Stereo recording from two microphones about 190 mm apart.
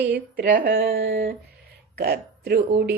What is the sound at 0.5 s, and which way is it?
Speech, 50° right (ahead or behind).